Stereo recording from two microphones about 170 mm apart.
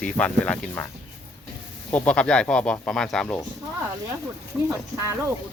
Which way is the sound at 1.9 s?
5° left (ahead or behind).